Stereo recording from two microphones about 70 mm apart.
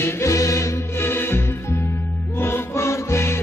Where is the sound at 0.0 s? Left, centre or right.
Left.